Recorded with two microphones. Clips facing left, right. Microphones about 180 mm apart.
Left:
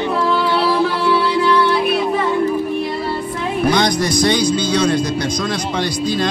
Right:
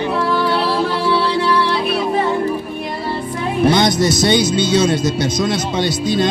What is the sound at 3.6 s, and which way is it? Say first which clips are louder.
Speech: right 3 dB; 25° right (ahead or behind).